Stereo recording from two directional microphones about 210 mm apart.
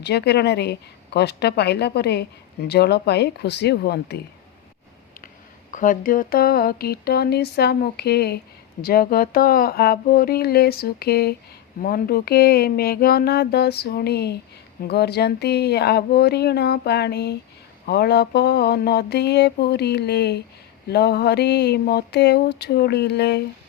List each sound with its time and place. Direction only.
0.0 s speech: 50° left (ahead or behind)
5.7 s speech: 40° left (ahead or behind)